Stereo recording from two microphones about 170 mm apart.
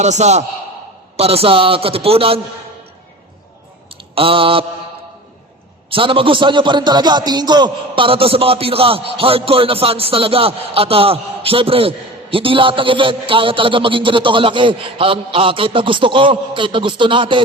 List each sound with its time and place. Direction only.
0.0 s a man's voice: 40° right (ahead or behind)
3.8 s mantra: 30° right (ahead or behind)
5.9 s a man's voice: 30° right (ahead or behind)